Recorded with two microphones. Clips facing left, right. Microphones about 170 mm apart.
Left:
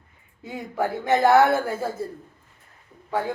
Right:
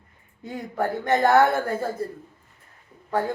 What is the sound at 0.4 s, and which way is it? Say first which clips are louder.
Speech: even; 5° left (ahead or behind).